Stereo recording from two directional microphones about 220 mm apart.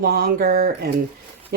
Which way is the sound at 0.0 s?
45° right (ahead or behind).